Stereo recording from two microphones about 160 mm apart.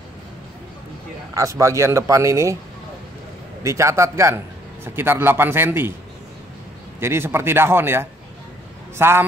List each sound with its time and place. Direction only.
1.3 s speech: 20° right (ahead or behind)
3.6 s speech: 20° right (ahead or behind)
7.0 s a man's voice: 15° right (ahead or behind)